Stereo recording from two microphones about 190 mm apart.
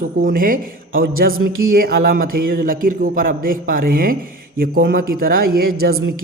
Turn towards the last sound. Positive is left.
turn(degrees=-55)  # may be behind; listen again after turning